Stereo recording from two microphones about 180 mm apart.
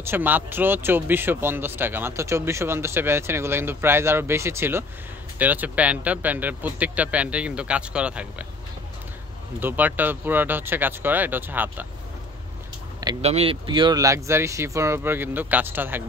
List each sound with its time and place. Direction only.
0.0 s speech: 10° right (ahead or behind)
9.6 s speech: 10° right (ahead or behind)
13.2 s speech: 35° right (ahead or behind); by 16.0 s 10° right (ahead or behind)